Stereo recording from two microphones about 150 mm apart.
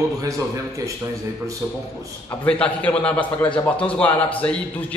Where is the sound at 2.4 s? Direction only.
10° left (ahead or behind).